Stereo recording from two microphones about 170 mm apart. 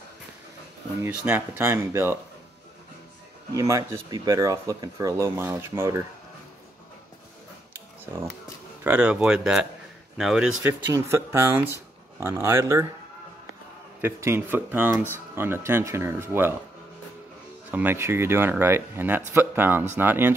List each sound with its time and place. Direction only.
1.0 s speech: 10° right (ahead or behind)
3.5 s speech: 20° right (ahead or behind)
8.8 s speech: 10° right (ahead or behind)
14.0 s speech: 15° right (ahead or behind)
17.6 s speech: 10° right (ahead or behind)